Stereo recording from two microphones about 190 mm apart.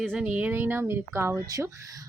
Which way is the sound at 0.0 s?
Centre (ahead or behind).